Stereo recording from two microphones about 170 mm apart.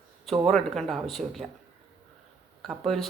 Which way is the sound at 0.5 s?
Centre (ahead or behind).